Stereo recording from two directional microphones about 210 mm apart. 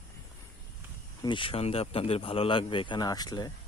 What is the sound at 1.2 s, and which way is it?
Speech, 25° left (ahead or behind).